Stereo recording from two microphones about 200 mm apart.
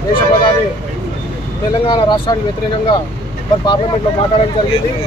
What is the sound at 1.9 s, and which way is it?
Speech, 25° left (ahead or behind).